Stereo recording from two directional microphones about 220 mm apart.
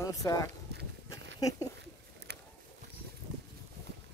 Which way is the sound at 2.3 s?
50° right (ahead or behind).